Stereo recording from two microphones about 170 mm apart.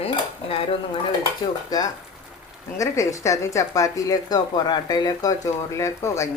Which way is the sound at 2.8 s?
20° left (ahead or behind).